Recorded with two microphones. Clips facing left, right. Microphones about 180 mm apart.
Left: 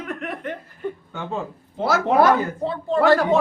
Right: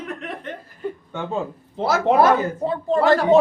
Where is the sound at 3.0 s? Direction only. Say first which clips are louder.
Even; 20° right (ahead or behind).